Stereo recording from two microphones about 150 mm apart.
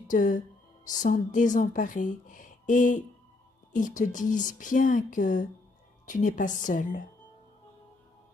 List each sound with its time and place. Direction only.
0.1 s a woman's voice: 60° left (ahead or behind)